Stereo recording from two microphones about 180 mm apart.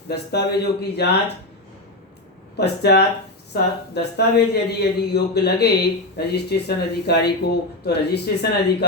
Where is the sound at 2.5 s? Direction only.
65° left (ahead or behind).